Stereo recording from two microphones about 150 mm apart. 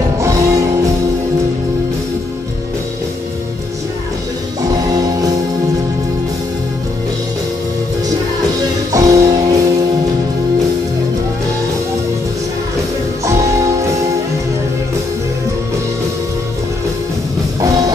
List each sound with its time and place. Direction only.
0.2 s music: 20° right (ahead or behind)
8.9 s music: 25° right (ahead or behind)
13.2 s music: 20° right (ahead or behind)
17.6 s music: 25° right (ahead or behind)